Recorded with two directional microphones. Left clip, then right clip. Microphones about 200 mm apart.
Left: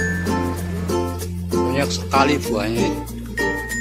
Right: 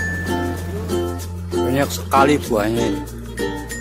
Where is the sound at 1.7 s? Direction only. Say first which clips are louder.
Right 3 dB; 15° right (ahead or behind).